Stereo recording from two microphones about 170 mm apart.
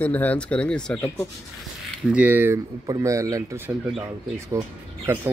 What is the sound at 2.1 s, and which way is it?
Speech, 10° right (ahead or behind).